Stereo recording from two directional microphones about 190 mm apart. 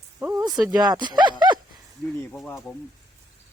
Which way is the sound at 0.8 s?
25° right (ahead or behind).